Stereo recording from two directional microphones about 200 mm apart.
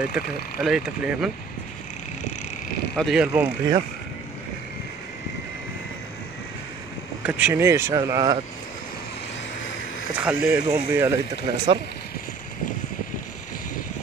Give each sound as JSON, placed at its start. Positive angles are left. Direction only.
{"t": 0.1, "sound": "speech", "side_deg": -5}
{"t": 3.0, "sound": "speech", "side_deg": -5}
{"t": 7.2, "sound": "speech", "side_deg": -10}
{"t": 10.2, "sound": "speech", "side_deg": -10}